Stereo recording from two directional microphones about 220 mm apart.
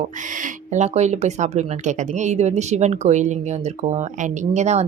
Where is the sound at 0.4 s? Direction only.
30° right (ahead or behind).